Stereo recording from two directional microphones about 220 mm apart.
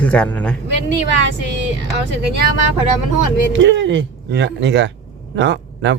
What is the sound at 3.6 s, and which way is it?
Speech, 55° right (ahead or behind).